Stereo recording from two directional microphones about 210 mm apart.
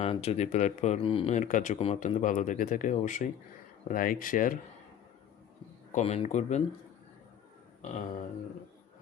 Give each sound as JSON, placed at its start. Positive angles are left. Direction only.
{"t": 0.0, "sound": "speech", "side_deg": 30}
{"t": 5.9, "sound": "speech", "side_deg": 30}
{"t": 7.8, "sound": "a sound", "side_deg": 35}